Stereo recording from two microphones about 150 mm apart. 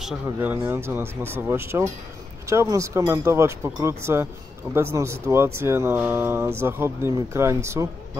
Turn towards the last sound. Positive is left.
turn(degrees=-20)  # may be behind; listen again after turning